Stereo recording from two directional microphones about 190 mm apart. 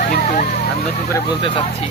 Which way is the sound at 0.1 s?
40° left (ahead or behind).